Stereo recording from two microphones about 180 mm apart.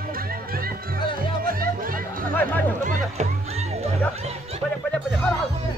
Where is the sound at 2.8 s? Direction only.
40° right (ahead or behind).